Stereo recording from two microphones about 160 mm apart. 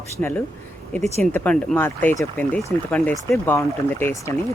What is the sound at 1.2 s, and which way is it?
Speech, 10° left (ahead or behind).